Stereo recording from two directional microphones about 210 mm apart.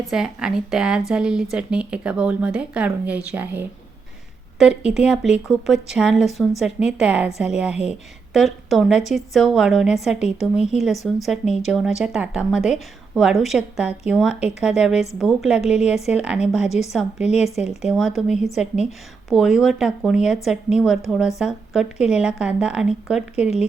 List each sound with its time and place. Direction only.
0.1 s speech: centre (ahead or behind)